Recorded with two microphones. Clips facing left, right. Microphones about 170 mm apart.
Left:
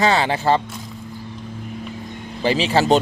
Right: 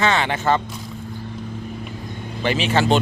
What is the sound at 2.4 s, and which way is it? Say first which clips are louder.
Speech: left 2 dB; 35° left (ahead or behind).